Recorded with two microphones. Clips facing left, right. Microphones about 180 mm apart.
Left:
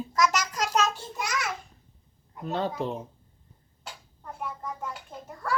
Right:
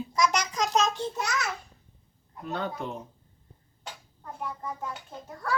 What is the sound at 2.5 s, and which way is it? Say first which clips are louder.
Speech: left 4 dB; 35° left (ahead or behind).